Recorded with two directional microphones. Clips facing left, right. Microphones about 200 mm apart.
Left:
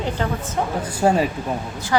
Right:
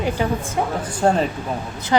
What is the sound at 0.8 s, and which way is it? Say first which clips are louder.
Speech: left 1 dB; 5° left (ahead or behind).